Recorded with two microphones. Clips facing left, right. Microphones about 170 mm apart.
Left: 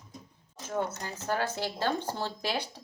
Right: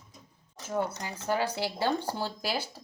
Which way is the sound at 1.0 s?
10° right (ahead or behind).